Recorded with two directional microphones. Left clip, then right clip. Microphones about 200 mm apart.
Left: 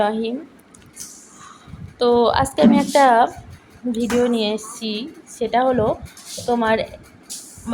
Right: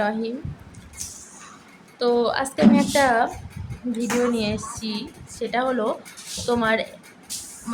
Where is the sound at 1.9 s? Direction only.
20° left (ahead or behind).